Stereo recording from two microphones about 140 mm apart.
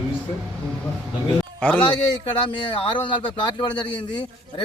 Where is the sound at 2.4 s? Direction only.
35° left (ahead or behind).